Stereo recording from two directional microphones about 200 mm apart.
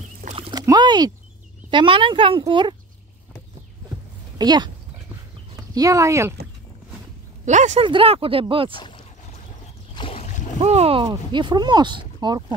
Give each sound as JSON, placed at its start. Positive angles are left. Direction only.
{"t": 0.2, "sound": "rowboat", "side_deg": -35}
{"t": 0.5, "sound": "a sound", "side_deg": -20}
{"t": 1.7, "sound": "speech", "side_deg": -25}
{"t": 4.4, "sound": "speech", "side_deg": -20}
{"t": 5.8, "sound": "speech", "side_deg": -15}
{"t": 7.4, "sound": "speech", "side_deg": -35}
{"t": 8.7, "sound": "boat", "side_deg": 25}
{"t": 9.9, "sound": "a sound", "side_deg": 30}
{"t": 10.6, "sound": "speech", "side_deg": -30}